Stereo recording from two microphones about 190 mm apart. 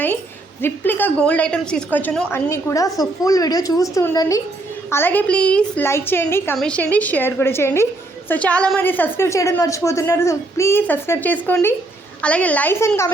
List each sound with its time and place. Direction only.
0.6 s a woman's voice: 10° left (ahead or behind)